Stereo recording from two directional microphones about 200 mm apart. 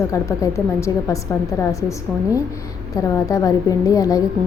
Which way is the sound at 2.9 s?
15° left (ahead or behind).